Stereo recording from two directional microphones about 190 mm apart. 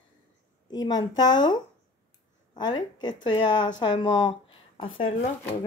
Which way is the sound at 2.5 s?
25° left (ahead or behind).